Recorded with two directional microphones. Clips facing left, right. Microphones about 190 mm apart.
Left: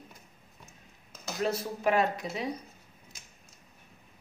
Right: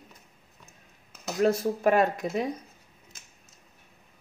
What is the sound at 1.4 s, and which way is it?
Speech, 50° right (ahead or behind).